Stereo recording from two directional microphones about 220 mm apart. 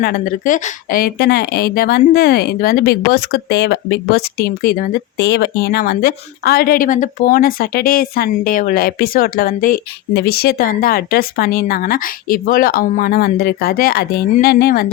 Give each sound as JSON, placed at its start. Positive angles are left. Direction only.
{"t": 0.0, "sound": "speech", "side_deg": 40}